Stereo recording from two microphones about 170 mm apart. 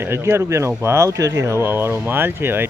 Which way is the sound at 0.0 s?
15° right (ahead or behind).